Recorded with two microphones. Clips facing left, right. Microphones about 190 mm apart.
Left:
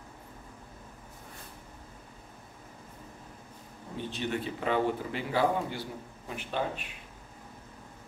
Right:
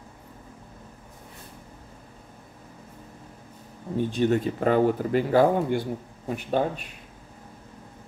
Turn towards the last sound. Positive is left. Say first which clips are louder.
# right 8 dB
turn(degrees=-45)  # may be behind; listen again after turning